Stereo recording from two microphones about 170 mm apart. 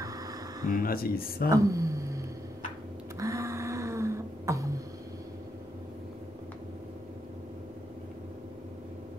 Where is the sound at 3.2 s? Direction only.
20° right (ahead or behind).